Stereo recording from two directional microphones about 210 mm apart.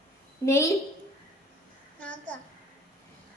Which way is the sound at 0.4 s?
15° left (ahead or behind).